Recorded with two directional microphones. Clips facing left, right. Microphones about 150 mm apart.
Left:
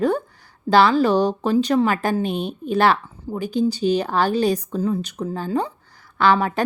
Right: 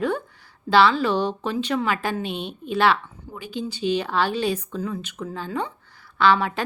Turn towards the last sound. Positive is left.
turn(degrees=45)  # may be behind; listen again after turning